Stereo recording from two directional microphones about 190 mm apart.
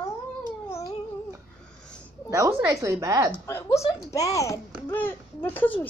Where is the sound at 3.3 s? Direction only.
15° left (ahead or behind).